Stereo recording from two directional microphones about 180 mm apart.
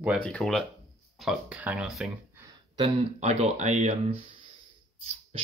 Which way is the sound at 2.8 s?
35° right (ahead or behind).